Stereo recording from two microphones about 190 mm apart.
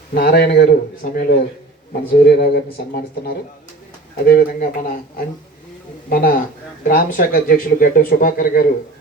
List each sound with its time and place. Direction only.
0.1 s speech: 55° left (ahead or behind)
1.0 s speech: 50° left (ahead or behind)